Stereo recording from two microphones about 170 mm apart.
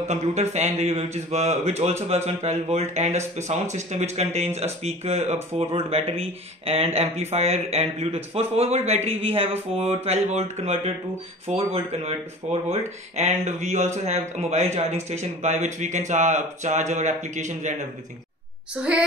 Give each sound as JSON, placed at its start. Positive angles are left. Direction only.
{"t": 0.1, "sound": "a man's voice", "side_deg": -40}
{"t": 18.8, "sound": "a woman's voice", "side_deg": -5}